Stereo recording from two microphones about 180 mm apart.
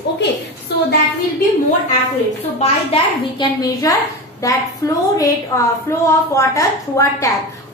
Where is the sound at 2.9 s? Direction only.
25° left (ahead or behind).